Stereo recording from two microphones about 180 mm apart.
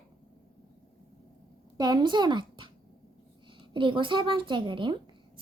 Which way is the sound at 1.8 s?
25° right (ahead or behind).